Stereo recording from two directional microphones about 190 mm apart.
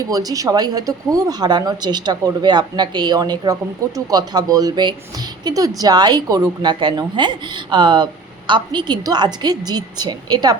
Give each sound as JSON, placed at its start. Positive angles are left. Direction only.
{"t": 0.1, "sound": "a woman's voice", "side_deg": -20}